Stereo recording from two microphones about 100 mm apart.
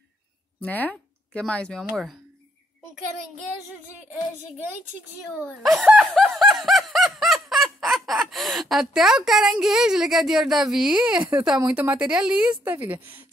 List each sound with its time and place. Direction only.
0.6 s a sound: 15° left (ahead or behind)
1.4 s snicker: 10° left (ahead or behind)
5.5 s snicker: centre (ahead or behind); by 13.2 s 20° right (ahead or behind)